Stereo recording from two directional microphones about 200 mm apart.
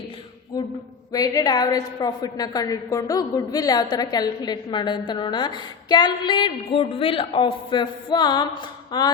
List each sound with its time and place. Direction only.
1.1 s a woman's voice: 20° left (ahead or behind)